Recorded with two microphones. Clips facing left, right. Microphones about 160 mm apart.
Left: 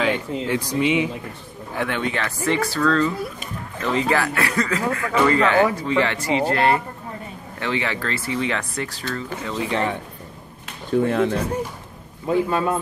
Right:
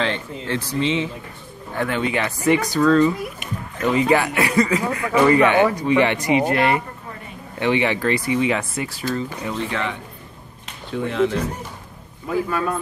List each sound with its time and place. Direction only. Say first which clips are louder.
0.0 s speech: left 3 dB; 10° left (ahead or behind)
1.8 s speech: right 2 dB; 5° right (ahead or behind)
9.7 s speech: left 3 dB; 35° left (ahead or behind)
10.9 s speech: left 2 dB; 50° left (ahead or behind)
12.3 s a man's voice: left 2 dB; 25° left (ahead or behind)